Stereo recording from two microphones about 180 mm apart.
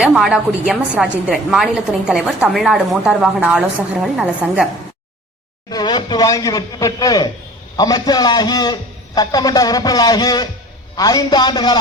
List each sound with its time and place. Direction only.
0.0 s a woman's voice: 5° right (ahead or behind)
5.7 s a man's voice: 25° left (ahead or behind)